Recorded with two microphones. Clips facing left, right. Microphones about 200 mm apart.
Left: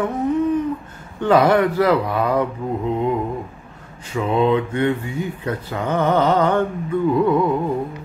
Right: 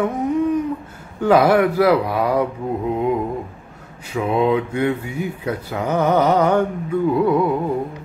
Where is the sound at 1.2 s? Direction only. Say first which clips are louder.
Right 1 dB; 10° right (ahead or behind).